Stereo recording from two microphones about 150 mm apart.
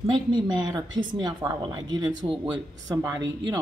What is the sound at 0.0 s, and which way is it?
A man's voice, 30° right (ahead or behind).